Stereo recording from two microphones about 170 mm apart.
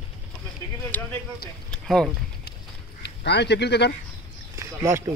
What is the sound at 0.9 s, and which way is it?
Speech, 10° left (ahead or behind).